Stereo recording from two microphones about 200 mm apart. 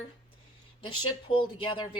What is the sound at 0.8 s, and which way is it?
Speech, 25° left (ahead or behind).